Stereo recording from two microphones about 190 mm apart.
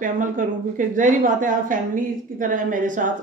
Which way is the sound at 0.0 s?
45° right (ahead or behind).